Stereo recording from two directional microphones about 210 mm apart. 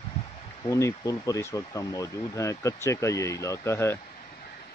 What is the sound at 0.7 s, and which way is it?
Speech, 15° left (ahead or behind).